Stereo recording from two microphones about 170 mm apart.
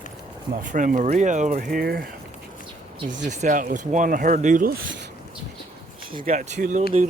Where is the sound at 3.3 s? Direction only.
45° right (ahead or behind).